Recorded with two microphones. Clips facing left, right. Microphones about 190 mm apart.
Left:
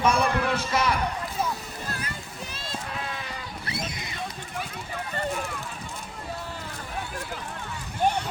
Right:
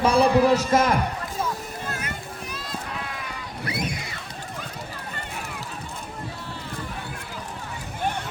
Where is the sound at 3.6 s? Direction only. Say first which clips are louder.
Right 6 dB; 25° left (ahead or behind).